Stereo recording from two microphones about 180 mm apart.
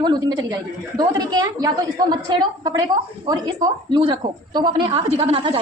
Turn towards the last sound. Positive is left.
turn(degrees=-30)  # may be behind; listen again after turning